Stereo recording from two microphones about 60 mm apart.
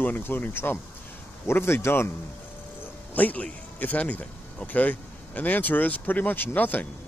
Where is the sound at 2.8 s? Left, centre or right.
Left.